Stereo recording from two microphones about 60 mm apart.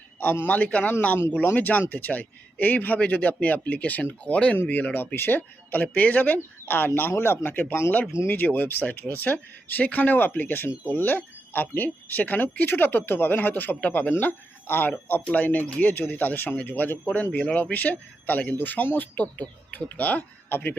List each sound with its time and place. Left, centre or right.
0.2 s speech: left
15.2 s speech: left
17.3 s speech: left